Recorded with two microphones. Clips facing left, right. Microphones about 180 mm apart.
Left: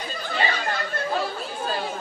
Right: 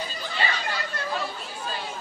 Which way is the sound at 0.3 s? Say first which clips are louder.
Left 4 dB; 50° left (ahead or behind).